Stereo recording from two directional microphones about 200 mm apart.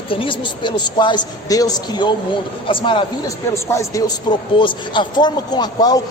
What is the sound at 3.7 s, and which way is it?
A man's voice, 15° left (ahead or behind).